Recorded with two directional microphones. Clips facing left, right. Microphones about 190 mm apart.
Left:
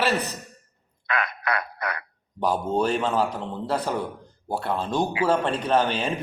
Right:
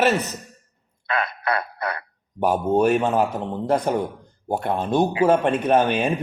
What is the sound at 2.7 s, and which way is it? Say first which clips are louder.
A man's voice: right 5 dB; 10° right (ahead or behind).